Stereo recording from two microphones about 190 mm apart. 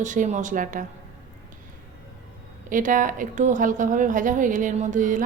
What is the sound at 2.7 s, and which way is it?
A woman's voice, 45° right (ahead or behind).